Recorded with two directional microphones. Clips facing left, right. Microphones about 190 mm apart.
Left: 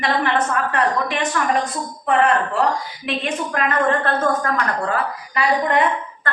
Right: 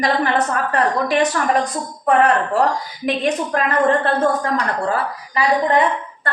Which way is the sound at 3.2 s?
35° right (ahead or behind).